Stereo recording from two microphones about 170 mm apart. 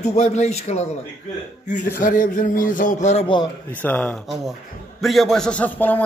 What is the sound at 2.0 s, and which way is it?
A man's voice, 50° left (ahead or behind).